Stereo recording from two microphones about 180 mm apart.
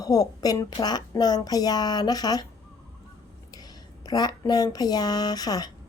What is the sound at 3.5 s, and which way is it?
Speech, 20° left (ahead or behind).